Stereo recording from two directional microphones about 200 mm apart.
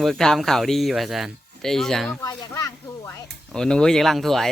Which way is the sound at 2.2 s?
15° left (ahead or behind).